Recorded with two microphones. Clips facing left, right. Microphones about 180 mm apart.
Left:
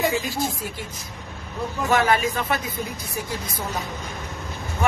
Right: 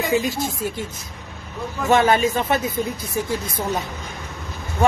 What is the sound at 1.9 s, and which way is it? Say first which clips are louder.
Speech: right 4 dB; 25° right (ahead or behind).